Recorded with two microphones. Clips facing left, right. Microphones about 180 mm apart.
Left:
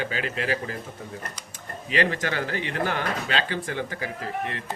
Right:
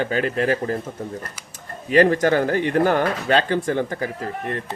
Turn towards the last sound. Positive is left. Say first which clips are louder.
# right 3 dB
turn(degrees=-45)  # may be behind; listen again after turning